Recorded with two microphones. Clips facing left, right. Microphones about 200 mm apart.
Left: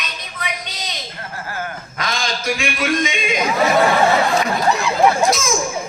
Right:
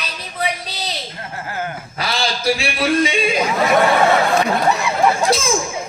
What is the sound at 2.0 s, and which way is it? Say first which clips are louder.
A man's voice: right 2 dB; 35° right (ahead or behind).